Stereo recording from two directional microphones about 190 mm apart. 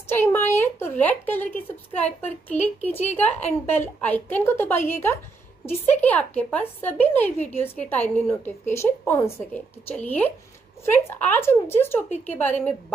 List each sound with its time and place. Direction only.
0.1 s speech: 10° left (ahead or behind)